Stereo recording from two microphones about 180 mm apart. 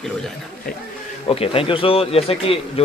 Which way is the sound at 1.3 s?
30° left (ahead or behind).